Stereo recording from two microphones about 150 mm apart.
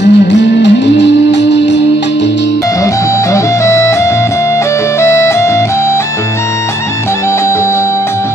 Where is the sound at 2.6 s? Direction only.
20° left (ahead or behind).